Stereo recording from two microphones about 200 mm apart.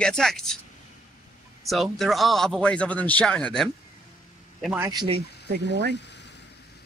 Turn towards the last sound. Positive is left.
turn(degrees=60)  # may be behind; listen again after turning